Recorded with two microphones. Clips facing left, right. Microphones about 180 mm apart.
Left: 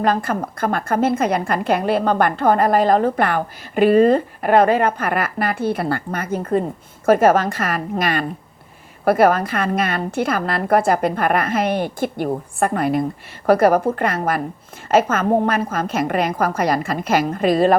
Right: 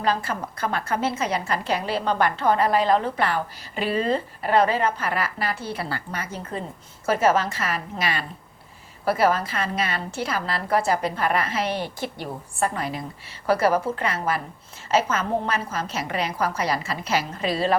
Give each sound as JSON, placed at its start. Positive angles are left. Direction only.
{"t": 0.0, "sound": "a woman's voice", "side_deg": 55}